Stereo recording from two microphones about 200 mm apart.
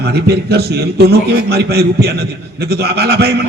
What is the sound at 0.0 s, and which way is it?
A man's voice, 55° right (ahead or behind).